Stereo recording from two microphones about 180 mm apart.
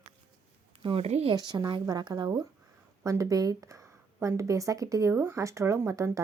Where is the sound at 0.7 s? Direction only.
30° right (ahead or behind).